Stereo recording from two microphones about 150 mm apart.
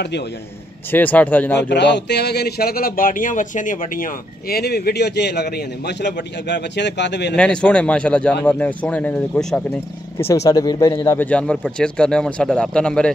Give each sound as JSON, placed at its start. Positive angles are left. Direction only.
{"t": 0.9, "sound": "speech", "side_deg": 10}
{"t": 1.7, "sound": "speech", "side_deg": 90}
{"t": 7.3, "sound": "speech", "side_deg": 5}